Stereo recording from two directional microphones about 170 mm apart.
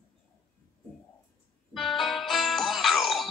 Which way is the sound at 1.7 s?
Centre (ahead or behind).